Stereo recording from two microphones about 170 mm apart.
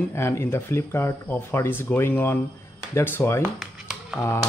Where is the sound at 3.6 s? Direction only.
5° right (ahead or behind).